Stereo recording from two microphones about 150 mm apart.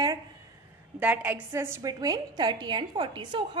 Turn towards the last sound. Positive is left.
turn(degrees=-30)  # may be behind; listen again after turning